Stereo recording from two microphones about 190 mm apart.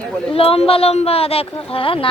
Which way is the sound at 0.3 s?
30° left (ahead or behind).